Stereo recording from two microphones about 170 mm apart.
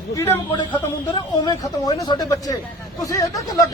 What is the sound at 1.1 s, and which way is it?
A man's voice, 25° left (ahead or behind).